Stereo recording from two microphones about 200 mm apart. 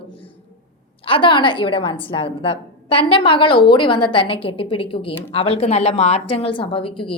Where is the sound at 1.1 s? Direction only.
25° left (ahead or behind).